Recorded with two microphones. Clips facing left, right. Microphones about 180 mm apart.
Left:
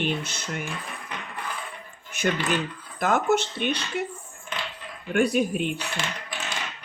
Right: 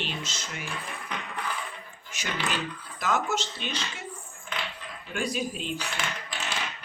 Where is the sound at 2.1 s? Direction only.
55° left (ahead or behind).